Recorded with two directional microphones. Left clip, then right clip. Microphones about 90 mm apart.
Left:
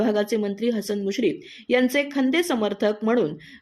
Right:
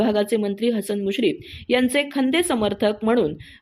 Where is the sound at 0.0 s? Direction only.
20° right (ahead or behind).